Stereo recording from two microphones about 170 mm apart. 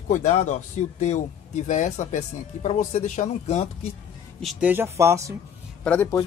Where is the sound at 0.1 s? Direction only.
40° left (ahead or behind).